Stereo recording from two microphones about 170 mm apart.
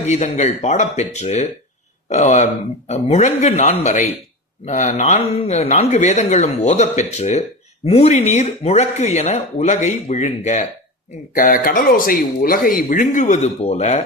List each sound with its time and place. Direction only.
0.0 s speech: 45° left (ahead or behind)
11.3 s speech: 55° left (ahead or behind); by 14.0 s 40° left (ahead or behind)